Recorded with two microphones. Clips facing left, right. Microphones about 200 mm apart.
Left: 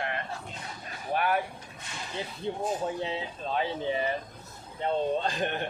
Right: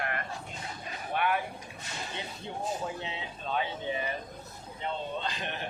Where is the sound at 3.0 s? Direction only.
35° left (ahead or behind).